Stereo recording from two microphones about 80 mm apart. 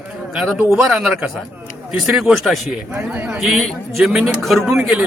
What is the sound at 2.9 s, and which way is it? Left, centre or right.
Speech, centre.